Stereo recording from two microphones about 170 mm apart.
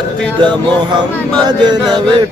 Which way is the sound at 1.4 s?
25° right (ahead or behind).